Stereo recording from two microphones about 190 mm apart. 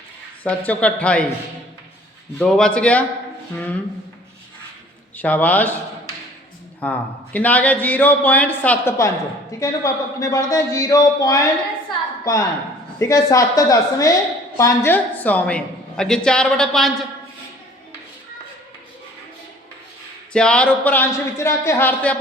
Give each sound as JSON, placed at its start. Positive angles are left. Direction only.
{"t": 0.4, "sound": "a man's voice", "side_deg": 10}
{"t": 2.4, "sound": "a woman's voice", "side_deg": 5}
{"t": 5.1, "sound": "a man's voice", "side_deg": 10}
{"t": 6.7, "sound": "a man's voice", "side_deg": 10}
{"t": 20.3, "sound": "a man's voice", "side_deg": 5}